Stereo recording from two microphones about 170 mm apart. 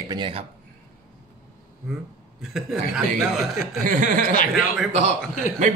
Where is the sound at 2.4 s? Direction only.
Centre (ahead or behind).